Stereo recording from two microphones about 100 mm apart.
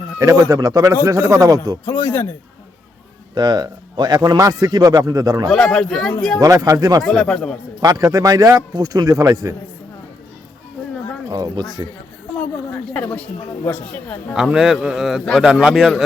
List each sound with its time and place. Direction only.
0.2 s a man's voice: 40° right (ahead or behind)
1.8 s speech: 25° left (ahead or behind)
3.3 s a man's voice: 45° right (ahead or behind)
5.5 s speech: centre (ahead or behind)
6.4 s a man's voice: 35° right (ahead or behind)
7.0 s speech: centre (ahead or behind)
7.8 s a man's voice: 40° right (ahead or behind)
11.3 s a man's voice: 40° right (ahead or behind)
12.7 s a woman's voice: 15° left (ahead or behind)
14.3 s speech: 5° right (ahead or behind)